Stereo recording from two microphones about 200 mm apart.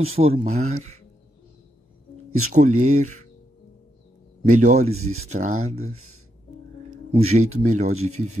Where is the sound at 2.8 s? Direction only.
35° right (ahead or behind).